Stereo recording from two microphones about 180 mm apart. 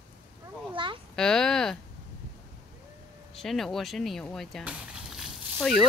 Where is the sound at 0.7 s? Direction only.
25° right (ahead or behind).